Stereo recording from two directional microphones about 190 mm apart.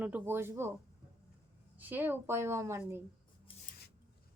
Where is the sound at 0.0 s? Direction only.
10° right (ahead or behind).